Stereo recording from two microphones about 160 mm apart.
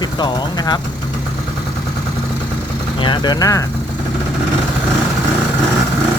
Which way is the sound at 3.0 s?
30° left (ahead or behind).